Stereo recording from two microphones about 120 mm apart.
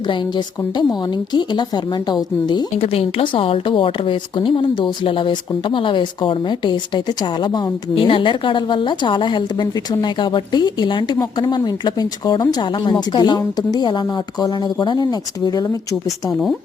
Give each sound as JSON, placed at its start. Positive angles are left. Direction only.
{"t": 0.1, "sound": "speech", "side_deg": 40}
{"t": 2.7, "sound": "speech", "side_deg": 55}